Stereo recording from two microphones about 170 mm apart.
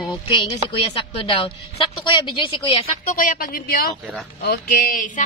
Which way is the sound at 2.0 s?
30° left (ahead or behind).